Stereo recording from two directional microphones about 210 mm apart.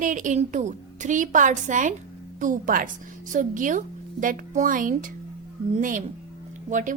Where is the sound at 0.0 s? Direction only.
35° right (ahead or behind).